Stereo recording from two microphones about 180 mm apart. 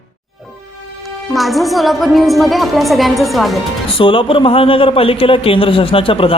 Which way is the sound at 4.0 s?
30° left (ahead or behind).